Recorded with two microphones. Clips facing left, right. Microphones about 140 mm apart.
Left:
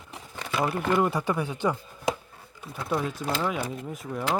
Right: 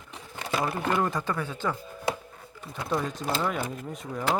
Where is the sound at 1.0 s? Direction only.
10° left (ahead or behind).